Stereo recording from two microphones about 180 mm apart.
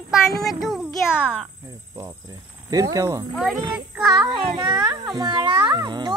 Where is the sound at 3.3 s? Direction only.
Centre (ahead or behind).